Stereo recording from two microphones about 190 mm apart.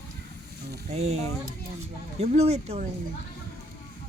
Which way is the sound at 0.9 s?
35° right (ahead or behind).